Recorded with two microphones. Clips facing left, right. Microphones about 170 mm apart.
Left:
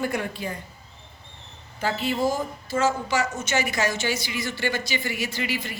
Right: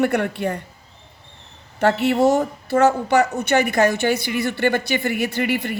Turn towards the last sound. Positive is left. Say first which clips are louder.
# right 8 dB
turn(degrees=-60)  # may be behind; listen again after turning